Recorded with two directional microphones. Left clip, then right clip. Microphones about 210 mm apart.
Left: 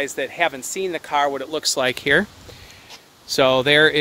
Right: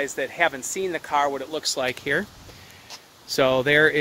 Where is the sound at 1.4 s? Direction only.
50° left (ahead or behind).